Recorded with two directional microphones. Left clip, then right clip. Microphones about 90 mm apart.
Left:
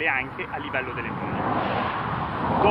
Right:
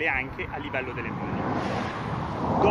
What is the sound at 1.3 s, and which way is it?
Speech, 65° left (ahead or behind).